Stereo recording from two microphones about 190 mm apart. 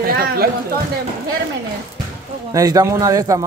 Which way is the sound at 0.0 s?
50° right (ahead or behind).